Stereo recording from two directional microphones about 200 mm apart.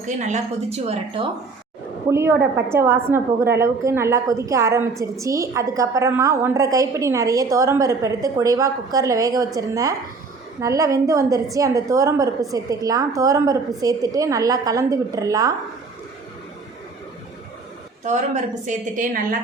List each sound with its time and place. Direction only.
0.0 s a woman's voice: 35° right (ahead or behind)
2.0 s a woman's voice: 15° right (ahead or behind)
18.0 s a woman's voice: 35° right (ahead or behind)